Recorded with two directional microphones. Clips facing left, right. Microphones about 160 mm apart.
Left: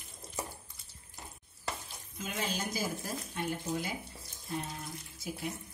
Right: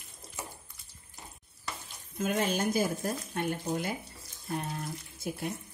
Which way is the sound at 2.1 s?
55° right (ahead or behind).